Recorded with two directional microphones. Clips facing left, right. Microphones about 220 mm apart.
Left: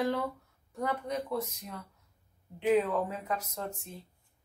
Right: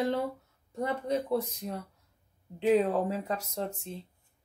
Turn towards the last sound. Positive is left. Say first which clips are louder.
# right 4 dB
turn(degrees=-30)  # may be behind; listen again after turning